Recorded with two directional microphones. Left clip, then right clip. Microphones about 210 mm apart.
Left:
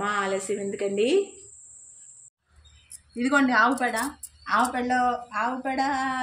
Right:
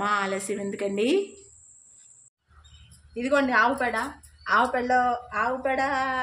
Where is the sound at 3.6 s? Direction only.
15° right (ahead or behind).